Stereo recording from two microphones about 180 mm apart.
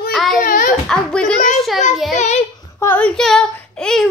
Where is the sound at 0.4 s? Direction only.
50° left (ahead or behind).